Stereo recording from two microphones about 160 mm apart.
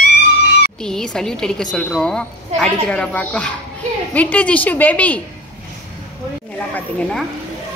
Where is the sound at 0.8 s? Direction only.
5° left (ahead or behind).